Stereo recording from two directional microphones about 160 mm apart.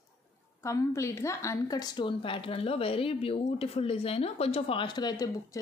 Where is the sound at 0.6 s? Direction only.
20° left (ahead or behind).